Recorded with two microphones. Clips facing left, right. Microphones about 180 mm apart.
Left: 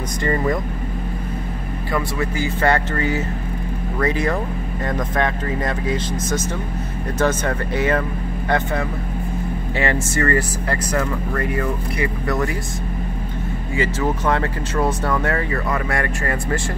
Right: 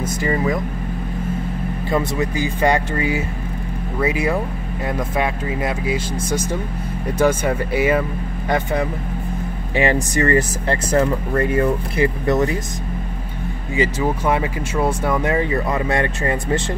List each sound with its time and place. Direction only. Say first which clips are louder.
0.2 s speech: left 1 dB; 5° right (ahead or behind)
1.9 s speech: right 2 dB; 20° right (ahead or behind)
13.7 s speech: right 2 dB; 10° right (ahead or behind)